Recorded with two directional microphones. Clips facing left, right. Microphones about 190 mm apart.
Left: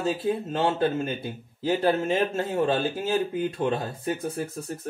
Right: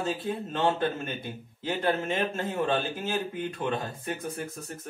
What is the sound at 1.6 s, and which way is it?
A man's voice, 35° left (ahead or behind).